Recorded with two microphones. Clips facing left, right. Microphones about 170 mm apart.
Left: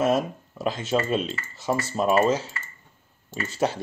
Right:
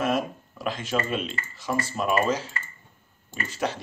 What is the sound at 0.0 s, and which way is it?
Speech, 25° left (ahead or behind).